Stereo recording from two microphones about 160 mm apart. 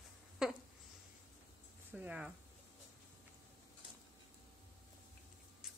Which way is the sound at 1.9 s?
10° right (ahead or behind).